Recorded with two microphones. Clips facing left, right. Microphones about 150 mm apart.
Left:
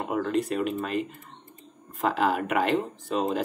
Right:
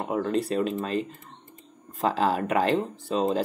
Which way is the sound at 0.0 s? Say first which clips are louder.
Even; 30° right (ahead or behind).